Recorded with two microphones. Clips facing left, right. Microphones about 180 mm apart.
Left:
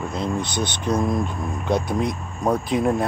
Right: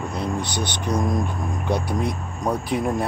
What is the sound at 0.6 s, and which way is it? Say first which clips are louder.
Speech: left 3 dB; 10° right (ahead or behind).